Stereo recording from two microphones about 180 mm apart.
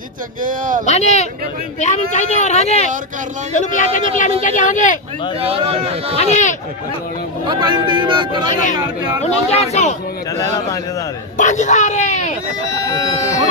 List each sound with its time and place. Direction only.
0.4 s speech: 50° right (ahead or behind)
0.8 s speech: 35° left (ahead or behind)
5.4 s speech: 35° right (ahead or behind)
6.1 s speech: 40° left (ahead or behind)
7.4 s speech: 25° right (ahead or behind)
8.5 s speech: 45° left (ahead or behind)
11.3 s speech: 40° left (ahead or behind)